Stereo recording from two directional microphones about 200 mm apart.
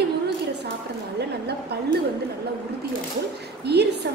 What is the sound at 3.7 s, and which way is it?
Speech, 55° right (ahead or behind).